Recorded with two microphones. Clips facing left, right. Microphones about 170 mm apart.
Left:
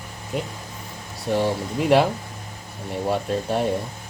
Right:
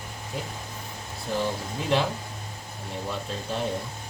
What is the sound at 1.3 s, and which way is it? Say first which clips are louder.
Speech: left 6 dB; 65° left (ahead or behind).